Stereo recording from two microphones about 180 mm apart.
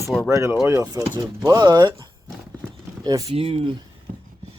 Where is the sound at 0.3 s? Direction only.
15° right (ahead or behind).